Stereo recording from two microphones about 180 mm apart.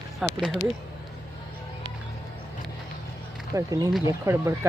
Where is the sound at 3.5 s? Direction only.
20° right (ahead or behind).